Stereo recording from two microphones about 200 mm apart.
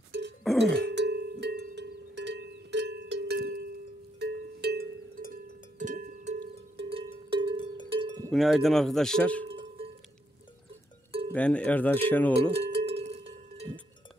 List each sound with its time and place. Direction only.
0.4 s a sound: centre (ahead or behind)
0.9 s music: 60° right (ahead or behind)
5.3 s music: 40° right (ahead or behind)
6.8 s music: 30° right (ahead or behind)
7.9 s cowbell: 25° right (ahead or behind)
8.3 s speech: centre (ahead or behind)
11.1 s cowbell: 30° right (ahead or behind)
11.3 s speech: 5° left (ahead or behind)
12.4 s music: 30° right (ahead or behind)